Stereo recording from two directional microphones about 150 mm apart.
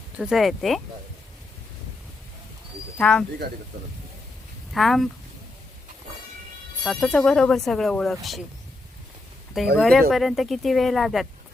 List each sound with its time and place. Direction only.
0.2 s speech: centre (ahead or behind)
3.0 s speech: 5° left (ahead or behind)
4.7 s speech: centre (ahead or behind)
6.8 s speech: centre (ahead or behind)
9.7 s speech: 5° left (ahead or behind)